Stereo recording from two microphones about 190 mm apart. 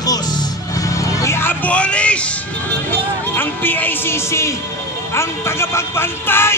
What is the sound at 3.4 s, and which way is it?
Speech, 10° left (ahead or behind).